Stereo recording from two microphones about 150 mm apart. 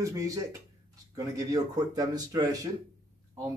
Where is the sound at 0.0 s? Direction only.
20° right (ahead or behind).